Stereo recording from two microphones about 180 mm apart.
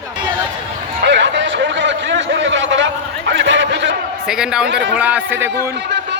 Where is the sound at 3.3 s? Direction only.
90° right.